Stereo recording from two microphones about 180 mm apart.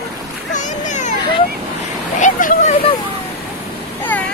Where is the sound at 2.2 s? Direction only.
45° left (ahead or behind).